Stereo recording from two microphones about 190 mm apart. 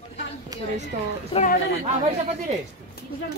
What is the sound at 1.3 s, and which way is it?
Speech, 30° left (ahead or behind).